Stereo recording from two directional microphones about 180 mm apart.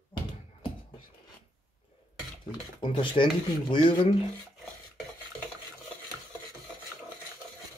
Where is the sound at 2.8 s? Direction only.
25° left (ahead or behind).